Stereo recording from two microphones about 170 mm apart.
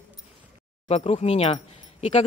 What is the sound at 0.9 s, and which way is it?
Speech, 35° left (ahead or behind).